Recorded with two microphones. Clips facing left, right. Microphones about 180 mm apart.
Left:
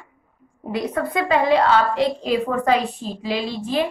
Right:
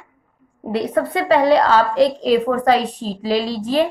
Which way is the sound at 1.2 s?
35° right (ahead or behind).